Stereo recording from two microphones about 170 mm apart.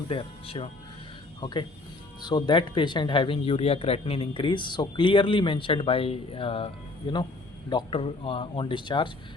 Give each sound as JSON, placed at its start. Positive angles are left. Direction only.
{"t": 0.1, "sound": "speech", "side_deg": 30}